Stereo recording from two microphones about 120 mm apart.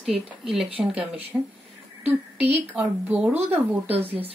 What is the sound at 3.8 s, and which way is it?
Speech, 55° right (ahead or behind).